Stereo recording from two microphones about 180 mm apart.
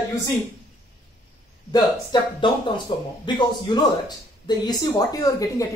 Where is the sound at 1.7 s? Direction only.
25° left (ahead or behind).